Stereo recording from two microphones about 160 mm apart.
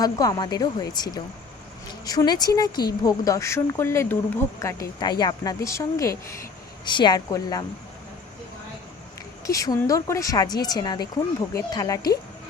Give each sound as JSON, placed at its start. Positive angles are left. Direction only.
{"t": 0.0, "sound": "speech", "side_deg": 25}
{"t": 9.5, "sound": "speech", "side_deg": 20}